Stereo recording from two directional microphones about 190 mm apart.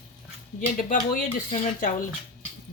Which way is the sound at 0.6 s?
45° left (ahead or behind).